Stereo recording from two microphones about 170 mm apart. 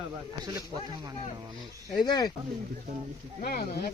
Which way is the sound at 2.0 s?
25° left (ahead or behind).